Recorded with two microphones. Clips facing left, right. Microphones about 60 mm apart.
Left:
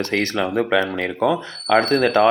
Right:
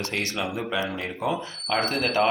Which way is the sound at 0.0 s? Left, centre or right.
Left.